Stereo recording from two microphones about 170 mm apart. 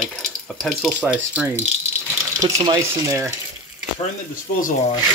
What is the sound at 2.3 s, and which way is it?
Speech, 25° right (ahead or behind).